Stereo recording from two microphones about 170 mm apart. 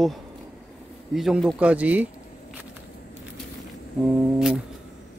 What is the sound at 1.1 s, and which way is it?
Speech, 5° right (ahead or behind).